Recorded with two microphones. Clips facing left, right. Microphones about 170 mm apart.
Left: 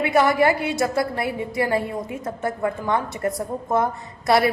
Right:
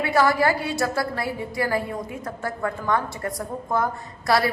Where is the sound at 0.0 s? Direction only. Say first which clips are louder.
Left 2 dB; 20° left (ahead or behind).